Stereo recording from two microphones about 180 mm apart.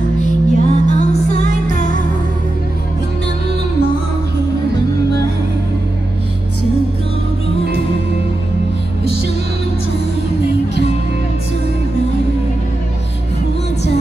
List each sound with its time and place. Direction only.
0.2 s music: 40° left (ahead or behind)